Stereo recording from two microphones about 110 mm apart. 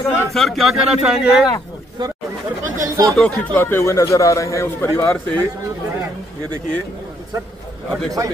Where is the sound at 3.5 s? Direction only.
20° left (ahead or behind).